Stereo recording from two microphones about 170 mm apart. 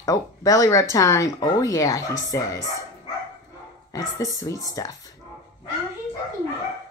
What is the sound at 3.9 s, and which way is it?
Speech, 20° left (ahead or behind).